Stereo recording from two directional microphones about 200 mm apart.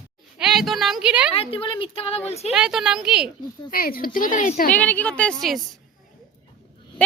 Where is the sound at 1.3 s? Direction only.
30° left (ahead or behind).